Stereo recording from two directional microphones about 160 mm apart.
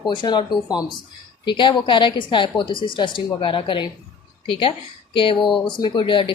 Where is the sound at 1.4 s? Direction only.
30° left (ahead or behind).